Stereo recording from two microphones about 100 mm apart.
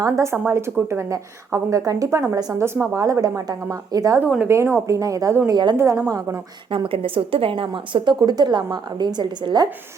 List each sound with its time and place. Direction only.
0.0 s a woman's voice: 30° right (ahead or behind)
5.5 s a woman's voice: 45° right (ahead or behind)
5.7 s a woman's voice: 25° right (ahead or behind)
6.7 s a woman's voice: 70° right (ahead or behind); by 9.6 s 45° right (ahead or behind)